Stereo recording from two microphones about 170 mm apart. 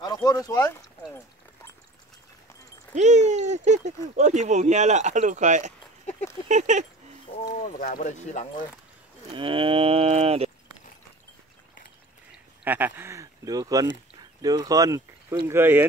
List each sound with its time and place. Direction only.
0.0 s speech: 20° left (ahead or behind)
2.9 s speech: 45° right (ahead or behind)
7.4 s speech: 60° left (ahead or behind)
9.3 s cattle: 30° right (ahead or behind)
12.3 s a sound: 10° right (ahead or behind)
14.4 s speech: 20° right (ahead or behind)